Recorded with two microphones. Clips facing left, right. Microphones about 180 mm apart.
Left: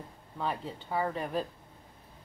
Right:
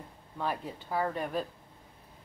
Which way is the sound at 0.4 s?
5° right (ahead or behind).